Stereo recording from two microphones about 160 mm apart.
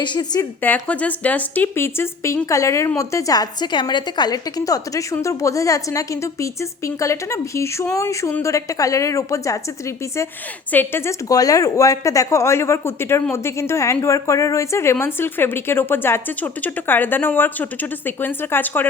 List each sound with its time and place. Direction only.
0.0 s a woman's voice: 25° left (ahead or behind)
0.6 s a woman's voice: 10° left (ahead or behind)